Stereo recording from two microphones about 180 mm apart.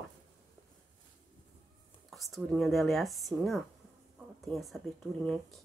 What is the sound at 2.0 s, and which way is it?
Speech, centre (ahead or behind).